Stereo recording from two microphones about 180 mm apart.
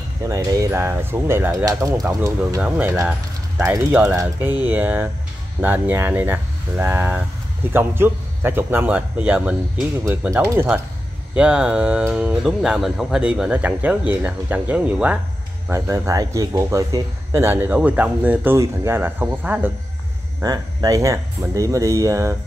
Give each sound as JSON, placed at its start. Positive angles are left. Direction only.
{"t": 0.3, "sound": "speech", "side_deg": -20}
{"t": 2.6, "sound": "speech", "side_deg": -5}